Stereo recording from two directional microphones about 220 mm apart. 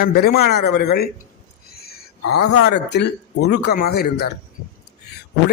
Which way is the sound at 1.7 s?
45° left (ahead or behind).